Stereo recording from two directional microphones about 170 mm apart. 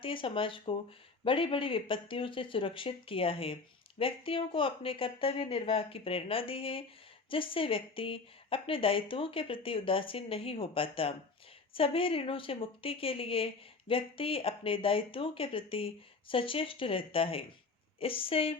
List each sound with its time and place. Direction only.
0.0 s speech: 30° left (ahead or behind)